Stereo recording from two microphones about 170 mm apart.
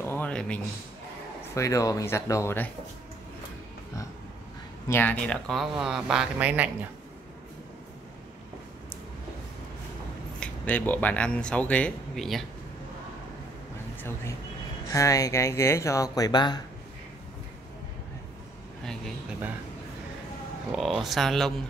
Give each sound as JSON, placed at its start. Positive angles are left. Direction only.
{"t": 0.0, "sound": "a sound", "side_deg": 10}
{"t": 1.5, "sound": "speech", "side_deg": 20}
{"t": 4.8, "sound": "speech", "side_deg": 10}
{"t": 10.4, "sound": "speech", "side_deg": 10}
{"t": 14.9, "sound": "speech", "side_deg": 20}
{"t": 20.7, "sound": "speech", "side_deg": 0}